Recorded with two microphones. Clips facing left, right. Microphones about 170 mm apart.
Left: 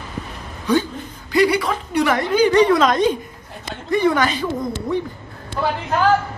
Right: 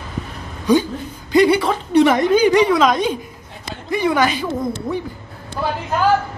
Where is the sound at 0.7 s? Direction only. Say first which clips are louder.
Right 3 dB; 15° right (ahead or behind).